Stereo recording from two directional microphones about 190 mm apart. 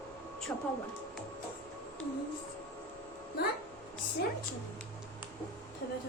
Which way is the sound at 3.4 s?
55° left (ahead or behind).